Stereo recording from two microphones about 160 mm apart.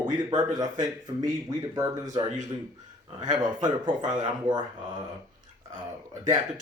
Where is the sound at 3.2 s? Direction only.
25° right (ahead or behind).